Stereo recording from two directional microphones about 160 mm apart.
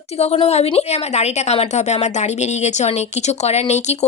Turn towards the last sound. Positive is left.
turn(degrees=45)  # may be behind; listen again after turning